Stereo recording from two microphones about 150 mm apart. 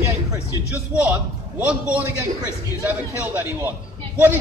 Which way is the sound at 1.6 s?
10° right (ahead or behind).